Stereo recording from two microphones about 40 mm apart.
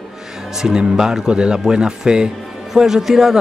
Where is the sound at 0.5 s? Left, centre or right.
Centre.